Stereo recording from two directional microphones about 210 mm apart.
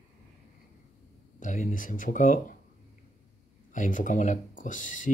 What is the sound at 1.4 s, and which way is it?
Speech, 40° left (ahead or behind).